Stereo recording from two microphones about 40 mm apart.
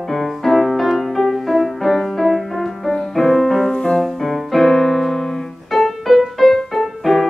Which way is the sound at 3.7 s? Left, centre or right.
Centre.